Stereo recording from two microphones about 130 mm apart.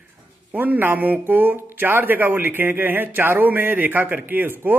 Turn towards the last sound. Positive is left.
turn(degrees=-15)  # may be behind; listen again after turning